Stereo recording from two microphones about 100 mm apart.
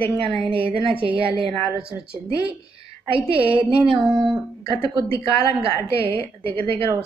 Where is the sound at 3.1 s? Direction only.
60° right (ahead or behind).